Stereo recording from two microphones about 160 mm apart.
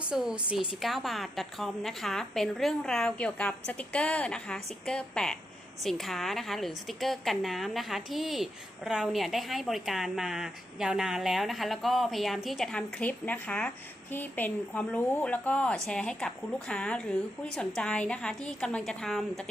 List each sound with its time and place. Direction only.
0.1 s a woman's voice: 5° right (ahead or behind)